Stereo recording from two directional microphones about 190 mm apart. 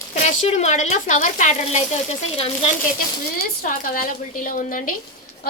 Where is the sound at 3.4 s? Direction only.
45° left (ahead or behind).